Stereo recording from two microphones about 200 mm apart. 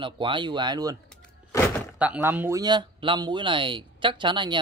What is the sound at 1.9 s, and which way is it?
Speech, 5° right (ahead or behind).